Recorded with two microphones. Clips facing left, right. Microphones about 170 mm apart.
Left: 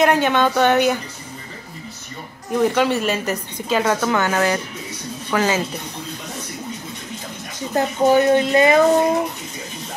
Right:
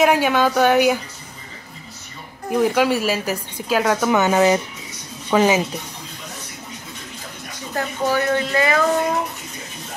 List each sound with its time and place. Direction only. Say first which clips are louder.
0.0 s speech: even; 5° right (ahead or behind)
2.5 s a woman's voice: even; 5° right (ahead or behind)
4.1 s speech: right 3 dB; 20° right (ahead or behind)
7.7 s speech: left 6 dB; 20° left (ahead or behind)